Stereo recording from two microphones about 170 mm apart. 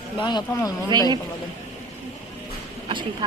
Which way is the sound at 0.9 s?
25° right (ahead or behind).